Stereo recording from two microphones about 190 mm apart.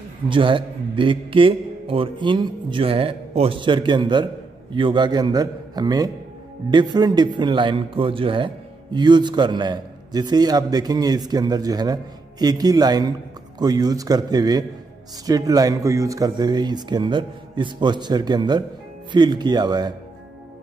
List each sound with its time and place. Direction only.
0.3 s a man's voice: 25° right (ahead or behind)